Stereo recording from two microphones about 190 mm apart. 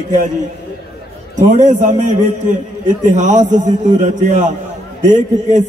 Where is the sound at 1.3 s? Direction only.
40° right (ahead or behind).